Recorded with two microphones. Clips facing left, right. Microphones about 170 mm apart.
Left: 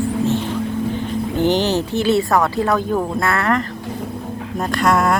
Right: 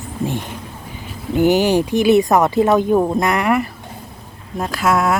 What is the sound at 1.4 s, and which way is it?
Speech, 10° right (ahead or behind).